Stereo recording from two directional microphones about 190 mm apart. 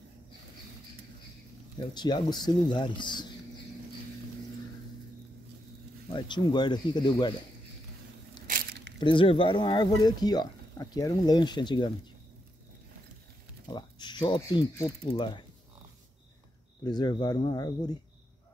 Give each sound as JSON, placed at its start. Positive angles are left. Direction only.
{"t": 2.0, "sound": "speech", "side_deg": 25}
{"t": 6.1, "sound": "speech", "side_deg": 25}
{"t": 8.5, "sound": "a sound", "side_deg": -50}
{"t": 9.0, "sound": "speech", "side_deg": 25}
{"t": 13.7, "sound": "speech", "side_deg": 25}
{"t": 16.8, "sound": "speech", "side_deg": 20}